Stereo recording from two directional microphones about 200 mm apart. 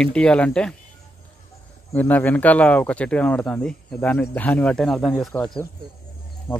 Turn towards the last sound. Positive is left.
turn(degrees=10)  # may be behind; listen again after turning